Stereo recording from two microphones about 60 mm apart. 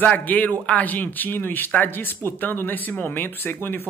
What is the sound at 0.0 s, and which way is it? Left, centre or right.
A man's voice, left.